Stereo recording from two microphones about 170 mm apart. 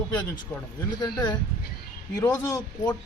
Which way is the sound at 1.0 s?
25° left (ahead or behind).